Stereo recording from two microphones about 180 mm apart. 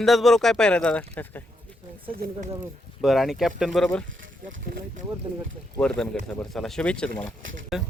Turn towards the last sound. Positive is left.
turn(degrees=0)  # may be behind; listen again after turning